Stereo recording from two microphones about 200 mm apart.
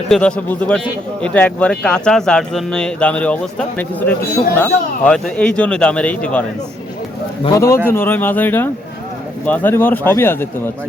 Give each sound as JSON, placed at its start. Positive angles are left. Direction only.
{"t": 0.1, "sound": "speech", "side_deg": 5}
{"t": 7.4, "sound": "speech", "side_deg": 15}